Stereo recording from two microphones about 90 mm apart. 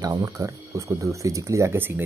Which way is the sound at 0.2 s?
35° right (ahead or behind).